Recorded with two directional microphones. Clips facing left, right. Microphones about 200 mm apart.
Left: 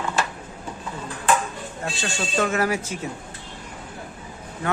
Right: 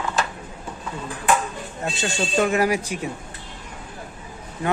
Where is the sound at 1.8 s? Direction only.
20° right (ahead or behind).